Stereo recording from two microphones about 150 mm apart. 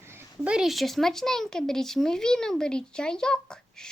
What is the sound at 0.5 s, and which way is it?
Speech, centre (ahead or behind).